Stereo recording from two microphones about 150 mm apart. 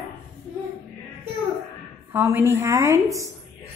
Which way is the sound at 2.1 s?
15° right (ahead or behind).